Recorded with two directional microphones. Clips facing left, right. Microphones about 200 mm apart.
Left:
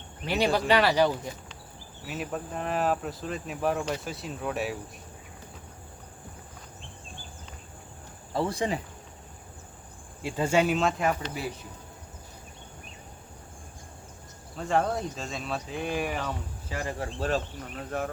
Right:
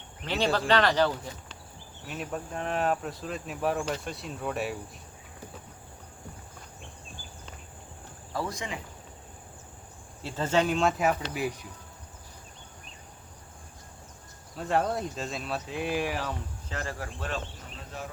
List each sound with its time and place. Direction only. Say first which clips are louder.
0.2 s speech: left 2 dB; 10° left (ahead or behind)
2.0 s cricket: left 2 dB; centre (ahead or behind)
8.3 s speech: left 6 dB; 30° left (ahead or behind)
10.2 s speech: left 2 dB; 10° left (ahead or behind)
14.5 s cricket: left 1 dB; centre (ahead or behind)
16.6 s speech: left 4 dB; 15° left (ahead or behind)
17.9 s speech: left 8 dB; 55° left (ahead or behind)